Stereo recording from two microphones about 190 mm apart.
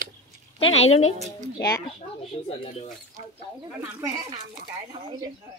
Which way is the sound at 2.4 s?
30° left (ahead or behind).